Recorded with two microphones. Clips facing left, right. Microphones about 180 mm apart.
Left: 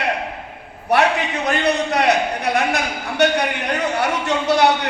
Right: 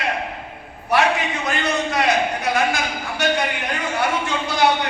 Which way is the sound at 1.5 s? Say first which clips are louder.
Left 5 dB; 65° left (ahead or behind).